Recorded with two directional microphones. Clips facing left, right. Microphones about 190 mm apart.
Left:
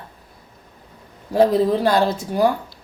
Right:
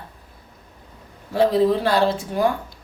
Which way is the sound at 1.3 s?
40° left (ahead or behind).